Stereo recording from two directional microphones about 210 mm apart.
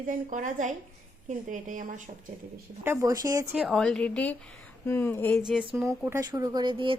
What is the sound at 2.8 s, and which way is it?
Speech, 15° right (ahead or behind).